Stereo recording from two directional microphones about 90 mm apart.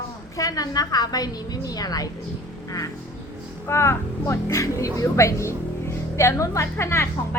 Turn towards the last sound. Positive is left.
turn(degrees=30)  # may be behind; listen again after turning